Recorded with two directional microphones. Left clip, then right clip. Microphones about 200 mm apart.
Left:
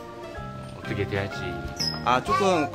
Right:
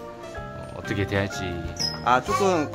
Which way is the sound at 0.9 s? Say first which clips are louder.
Right 3 dB; 60° right (ahead or behind).